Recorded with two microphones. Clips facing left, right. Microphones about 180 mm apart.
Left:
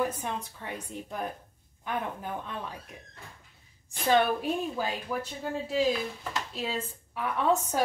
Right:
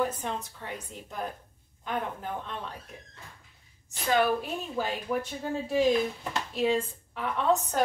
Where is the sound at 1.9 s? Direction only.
10° left (ahead or behind).